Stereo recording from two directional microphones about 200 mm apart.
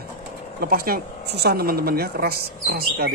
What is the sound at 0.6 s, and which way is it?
Speech, 45° right (ahead or behind).